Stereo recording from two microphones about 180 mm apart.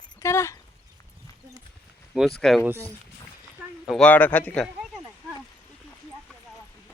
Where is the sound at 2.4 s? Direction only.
Centre (ahead or behind).